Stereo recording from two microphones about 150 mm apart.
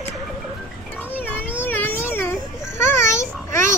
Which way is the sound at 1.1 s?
10° left (ahead or behind).